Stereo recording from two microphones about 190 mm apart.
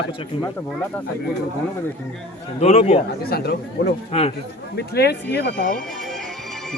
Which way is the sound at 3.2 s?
55° left (ahead or behind).